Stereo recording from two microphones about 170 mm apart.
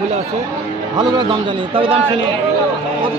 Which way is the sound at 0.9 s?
25° right (ahead or behind).